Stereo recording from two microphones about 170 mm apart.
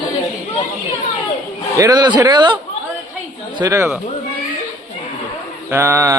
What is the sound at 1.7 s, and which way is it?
Speech, 25° right (ahead or behind).